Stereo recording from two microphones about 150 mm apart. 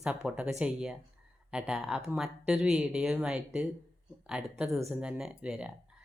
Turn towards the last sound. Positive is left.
turn(degrees=-5)  # may be behind; listen again after turning